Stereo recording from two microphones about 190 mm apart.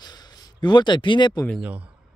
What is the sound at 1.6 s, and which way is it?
Speech, 10° right (ahead or behind).